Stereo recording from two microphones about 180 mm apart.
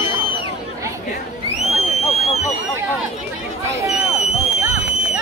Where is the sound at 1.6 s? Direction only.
35° left (ahead or behind).